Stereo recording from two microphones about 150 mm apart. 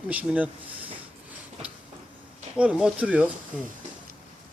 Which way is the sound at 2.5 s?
5° right (ahead or behind).